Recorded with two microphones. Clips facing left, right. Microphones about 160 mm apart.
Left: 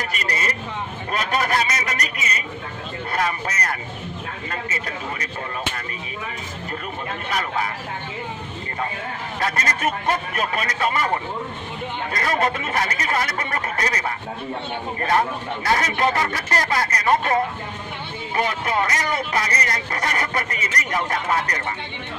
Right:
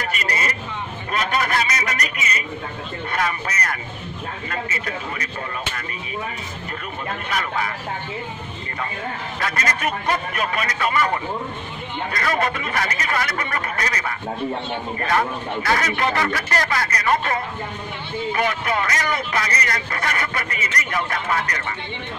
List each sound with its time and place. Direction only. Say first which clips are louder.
0.1 s vehicle: right 1 dB; 40° left (ahead or behind)
1.1 s a man's voice: even; 35° left (ahead or behind)
7.2 s a man's voice: left 1 dB; 35° left (ahead or behind)
9.4 s a man's voice: left 1 dB; 35° left (ahead or behind)
12.1 s a man's voice: even; 30° left (ahead or behind)